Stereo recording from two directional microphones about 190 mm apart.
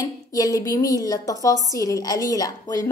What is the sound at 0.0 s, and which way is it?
A woman's voice, 20° left (ahead or behind).